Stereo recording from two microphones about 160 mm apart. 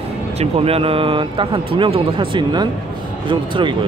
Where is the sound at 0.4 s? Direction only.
40° right (ahead or behind).